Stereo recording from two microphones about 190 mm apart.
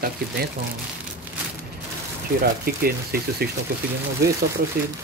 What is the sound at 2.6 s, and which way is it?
Speech, 55° right (ahead or behind).